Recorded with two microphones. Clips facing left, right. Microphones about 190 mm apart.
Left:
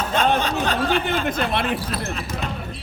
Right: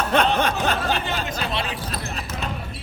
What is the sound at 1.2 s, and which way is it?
Speech, 55° left (ahead or behind).